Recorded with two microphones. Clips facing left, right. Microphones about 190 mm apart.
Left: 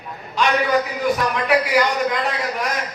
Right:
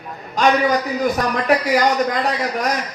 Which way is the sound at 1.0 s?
40° right (ahead or behind).